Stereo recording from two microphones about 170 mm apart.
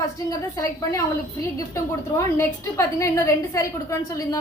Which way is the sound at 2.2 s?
15° left (ahead or behind).